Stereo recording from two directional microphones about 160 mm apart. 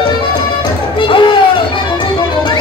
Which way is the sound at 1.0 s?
30° left (ahead or behind).